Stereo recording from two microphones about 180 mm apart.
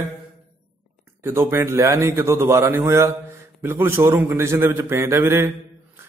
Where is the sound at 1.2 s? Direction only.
15° right (ahead or behind).